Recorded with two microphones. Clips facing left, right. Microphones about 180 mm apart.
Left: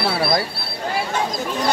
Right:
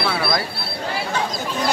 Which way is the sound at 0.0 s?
35° left (ahead or behind).